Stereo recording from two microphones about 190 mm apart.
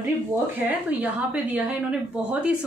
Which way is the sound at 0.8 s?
10° right (ahead or behind).